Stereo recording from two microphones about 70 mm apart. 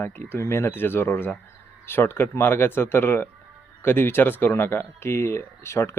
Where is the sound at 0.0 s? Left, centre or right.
Left.